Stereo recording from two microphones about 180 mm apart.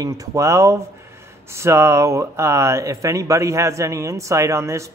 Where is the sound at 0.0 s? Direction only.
20° right (ahead or behind).